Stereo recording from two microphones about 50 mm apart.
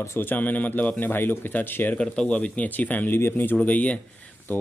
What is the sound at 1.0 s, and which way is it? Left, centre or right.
Speech, left.